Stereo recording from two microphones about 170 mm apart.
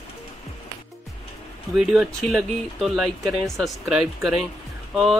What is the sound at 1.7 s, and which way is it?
Speech, centre (ahead or behind).